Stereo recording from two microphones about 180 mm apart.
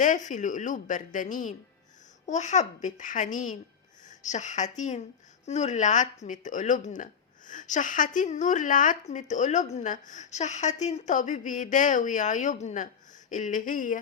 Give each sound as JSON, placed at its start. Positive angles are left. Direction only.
{"t": 0.0, "sound": "speech", "side_deg": 45}